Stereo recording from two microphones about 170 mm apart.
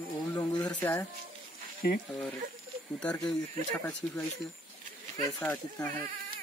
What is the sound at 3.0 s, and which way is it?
Speech, 5° left (ahead or behind).